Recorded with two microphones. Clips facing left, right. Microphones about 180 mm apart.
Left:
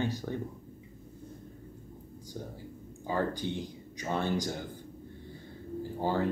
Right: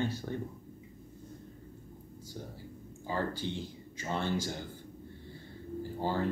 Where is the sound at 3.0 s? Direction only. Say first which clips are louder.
Left 3 dB; 15° left (ahead or behind).